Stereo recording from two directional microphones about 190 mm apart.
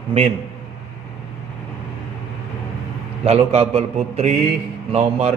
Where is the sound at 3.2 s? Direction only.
35° right (ahead or behind).